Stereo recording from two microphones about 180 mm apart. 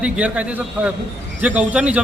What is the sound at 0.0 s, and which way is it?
A man's voice, 5° right (ahead or behind).